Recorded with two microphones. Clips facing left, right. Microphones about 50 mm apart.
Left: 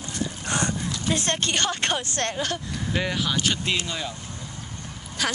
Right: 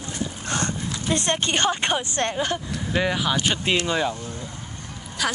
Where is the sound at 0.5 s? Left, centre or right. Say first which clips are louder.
Left 1 dB; left.